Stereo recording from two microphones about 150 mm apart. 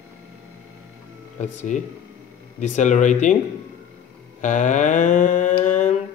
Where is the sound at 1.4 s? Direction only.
50° left (ahead or behind).